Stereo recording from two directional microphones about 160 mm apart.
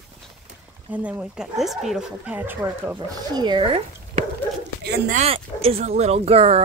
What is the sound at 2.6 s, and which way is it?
Speech, 25° right (ahead or behind).